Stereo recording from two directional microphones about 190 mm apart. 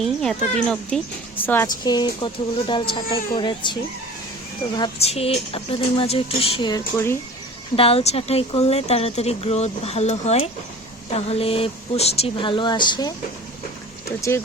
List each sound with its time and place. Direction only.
0.0 s a child's voice: centre (ahead or behind)
1.6 s speech: 20° left (ahead or behind)
4.8 s speech: 30° left (ahead or behind); by 7.2 s 15° left (ahead or behind)
7.8 s speech: 30° left (ahead or behind)
14.2 s speech: 15° left (ahead or behind)